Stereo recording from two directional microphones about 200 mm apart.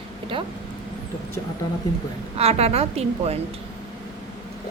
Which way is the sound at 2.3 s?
30° right (ahead or behind).